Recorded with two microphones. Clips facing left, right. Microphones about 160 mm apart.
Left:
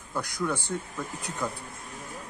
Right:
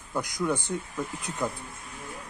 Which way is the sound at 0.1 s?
15° right (ahead or behind).